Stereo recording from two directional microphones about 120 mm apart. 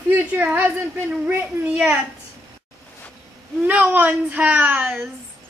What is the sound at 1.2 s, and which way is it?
Speech, 20° right (ahead or behind).